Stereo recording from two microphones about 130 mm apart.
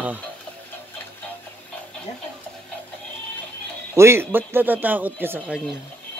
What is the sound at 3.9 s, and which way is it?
Speech, 20° right (ahead or behind).